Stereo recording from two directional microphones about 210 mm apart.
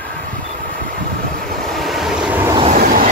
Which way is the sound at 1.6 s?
Centre (ahead or behind).